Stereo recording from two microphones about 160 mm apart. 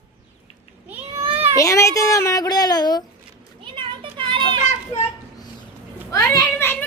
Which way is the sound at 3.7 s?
30° right (ahead or behind).